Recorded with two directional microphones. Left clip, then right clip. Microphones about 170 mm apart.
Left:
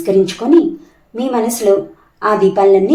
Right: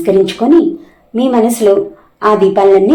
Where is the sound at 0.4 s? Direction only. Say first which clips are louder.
Right 2 dB; 15° right (ahead or behind).